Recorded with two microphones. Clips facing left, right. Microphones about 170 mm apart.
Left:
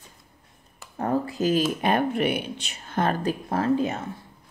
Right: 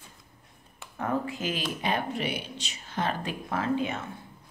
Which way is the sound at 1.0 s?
35° left (ahead or behind).